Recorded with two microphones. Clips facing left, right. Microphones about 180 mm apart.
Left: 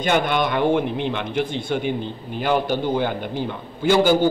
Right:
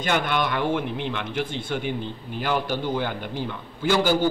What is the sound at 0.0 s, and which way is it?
A man's voice, 20° left (ahead or behind).